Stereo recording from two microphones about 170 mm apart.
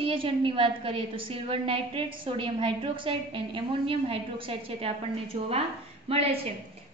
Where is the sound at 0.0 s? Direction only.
30° right (ahead or behind).